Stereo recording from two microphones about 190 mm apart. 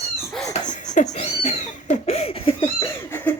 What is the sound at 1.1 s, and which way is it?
Cat, 35° left (ahead or behind).